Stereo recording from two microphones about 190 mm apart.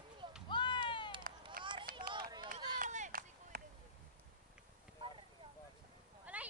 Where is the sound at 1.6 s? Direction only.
25° right (ahead or behind).